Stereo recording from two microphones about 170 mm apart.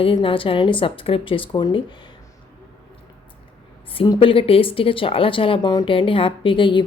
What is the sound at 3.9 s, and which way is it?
Speech, 30° left (ahead or behind).